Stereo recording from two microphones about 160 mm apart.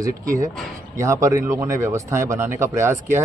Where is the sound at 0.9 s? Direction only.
20° right (ahead or behind).